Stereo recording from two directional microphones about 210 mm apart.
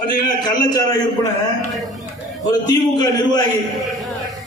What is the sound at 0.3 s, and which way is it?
Speech, 20° left (ahead or behind).